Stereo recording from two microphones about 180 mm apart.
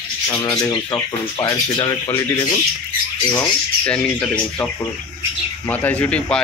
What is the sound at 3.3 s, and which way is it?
Squawk, 10° left (ahead or behind).